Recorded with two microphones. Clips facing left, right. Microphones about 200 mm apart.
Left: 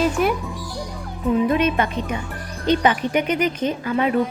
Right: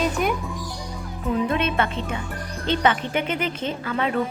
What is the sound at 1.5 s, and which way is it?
Speech, 10° left (ahead or behind).